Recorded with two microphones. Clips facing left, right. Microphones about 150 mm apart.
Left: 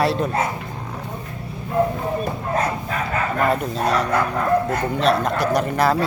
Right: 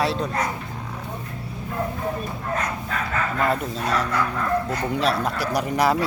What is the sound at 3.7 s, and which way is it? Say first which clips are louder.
Speech: left 4 dB; 60° left (ahead or behind).